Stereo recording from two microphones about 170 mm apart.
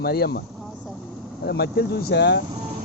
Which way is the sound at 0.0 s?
65° left (ahead or behind).